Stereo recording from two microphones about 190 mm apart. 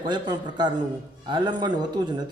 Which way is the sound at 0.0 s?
25° right (ahead or behind).